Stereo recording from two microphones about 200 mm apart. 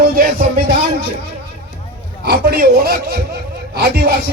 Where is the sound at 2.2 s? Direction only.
50° right (ahead or behind).